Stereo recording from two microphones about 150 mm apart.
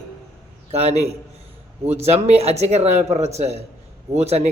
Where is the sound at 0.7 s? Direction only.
45° right (ahead or behind).